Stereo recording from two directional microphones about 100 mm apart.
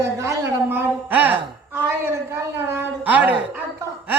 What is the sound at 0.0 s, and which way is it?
A woman's voice, 30° right (ahead or behind).